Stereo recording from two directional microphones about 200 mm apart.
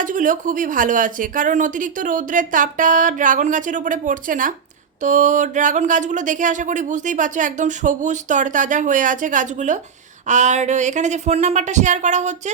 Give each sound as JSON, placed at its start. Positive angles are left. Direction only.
{"t": 0.0, "sound": "speech", "side_deg": -40}